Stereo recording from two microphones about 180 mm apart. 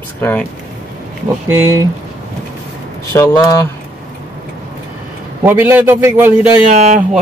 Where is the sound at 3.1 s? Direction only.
15° left (ahead or behind).